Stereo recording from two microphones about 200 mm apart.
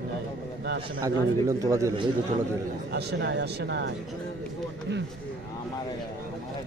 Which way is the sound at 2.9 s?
55° right (ahead or behind).